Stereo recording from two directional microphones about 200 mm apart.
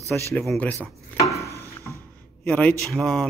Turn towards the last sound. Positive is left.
turn(degrees=0)  # may be behind; listen again after turning